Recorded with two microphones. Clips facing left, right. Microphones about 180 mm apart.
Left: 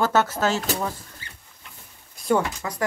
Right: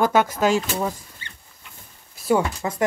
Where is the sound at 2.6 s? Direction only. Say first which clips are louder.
Right 4 dB; 25° right (ahead or behind).